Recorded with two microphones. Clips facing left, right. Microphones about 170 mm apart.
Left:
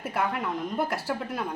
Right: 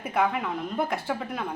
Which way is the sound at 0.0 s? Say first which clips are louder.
Right 3 dB; 5° left (ahead or behind).